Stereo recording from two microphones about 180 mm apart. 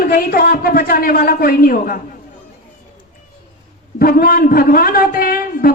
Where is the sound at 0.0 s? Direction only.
55° left (ahead or behind).